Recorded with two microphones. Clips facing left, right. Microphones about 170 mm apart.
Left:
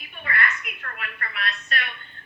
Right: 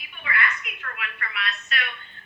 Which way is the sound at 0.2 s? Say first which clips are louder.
Left 1 dB; 40° left (ahead or behind).